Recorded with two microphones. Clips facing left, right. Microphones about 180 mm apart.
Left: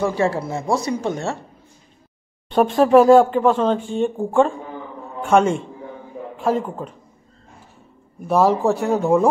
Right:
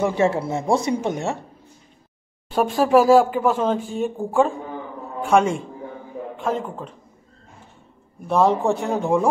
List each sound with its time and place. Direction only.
0.0 s speech: 20° right (ahead or behind)
2.5 s speech: centre (ahead or behind)
8.3 s speech: 5° left (ahead or behind)